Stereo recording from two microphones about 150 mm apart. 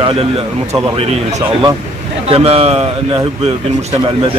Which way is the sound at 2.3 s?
40° right (ahead or behind).